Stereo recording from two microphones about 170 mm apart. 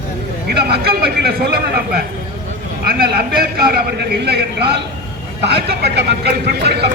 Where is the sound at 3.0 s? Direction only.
60° right (ahead or behind).